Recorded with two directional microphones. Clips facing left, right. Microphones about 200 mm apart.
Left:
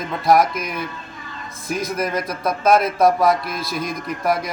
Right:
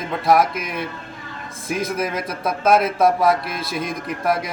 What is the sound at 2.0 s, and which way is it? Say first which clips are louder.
A man's voice: left 1 dB; 5° right (ahead or behind).